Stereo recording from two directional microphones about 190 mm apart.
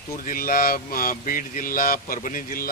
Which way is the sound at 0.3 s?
50° left (ahead or behind).